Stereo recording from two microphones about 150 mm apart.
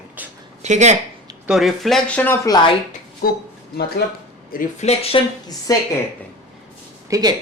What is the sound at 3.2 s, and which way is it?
Speech, 90° left.